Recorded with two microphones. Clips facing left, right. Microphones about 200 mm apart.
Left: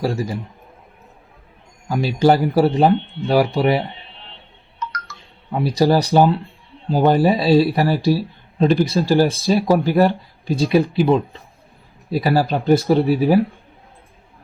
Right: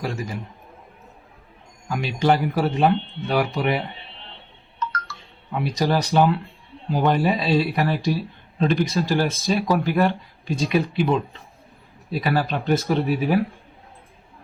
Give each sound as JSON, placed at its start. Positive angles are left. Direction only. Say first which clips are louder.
{"t": 0.0, "sound": "speech", "louder": "left 7 dB", "side_deg": 35}
{"t": 1.9, "sound": "speech", "louder": "left 5 dB", "side_deg": 35}
{"t": 4.8, "sound": "telephone dialing", "louder": "right 1 dB", "side_deg": 20}
{"t": 5.5, "sound": "speech", "louder": "left 6 dB", "side_deg": 35}